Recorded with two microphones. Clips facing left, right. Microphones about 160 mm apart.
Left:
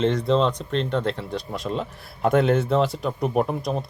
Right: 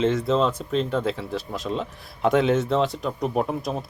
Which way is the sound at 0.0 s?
Centre (ahead or behind).